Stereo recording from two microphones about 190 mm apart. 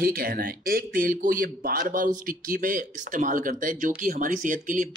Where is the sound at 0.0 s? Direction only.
50° right (ahead or behind).